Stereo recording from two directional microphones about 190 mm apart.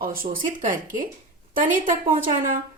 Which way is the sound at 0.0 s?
50° right (ahead or behind).